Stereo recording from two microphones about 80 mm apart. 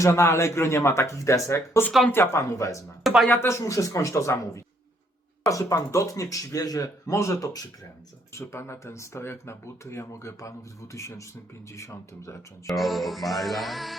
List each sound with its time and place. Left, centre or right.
0.0 s speech: left
3.0 s a sound: centre
3.3 s speech: left
12.6 s speech: centre